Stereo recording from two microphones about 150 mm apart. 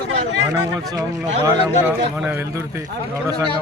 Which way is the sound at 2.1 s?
15° right (ahead or behind).